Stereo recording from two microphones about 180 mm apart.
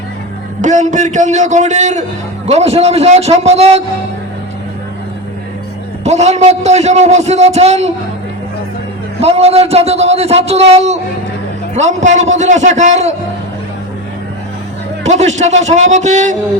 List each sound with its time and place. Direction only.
0.6 s a man's voice: 45° right (ahead or behind)
6.1 s a man's voice: 40° right (ahead or behind)
9.2 s a man's voice: 35° right (ahead or behind)
15.0 s a man's voice: 40° right (ahead or behind)